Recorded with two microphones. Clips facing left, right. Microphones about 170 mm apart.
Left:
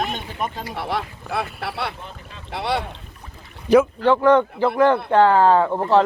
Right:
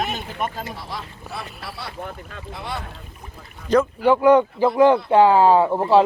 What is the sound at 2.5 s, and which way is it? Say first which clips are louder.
Speech: left 8 dB; 75° left (ahead or behind).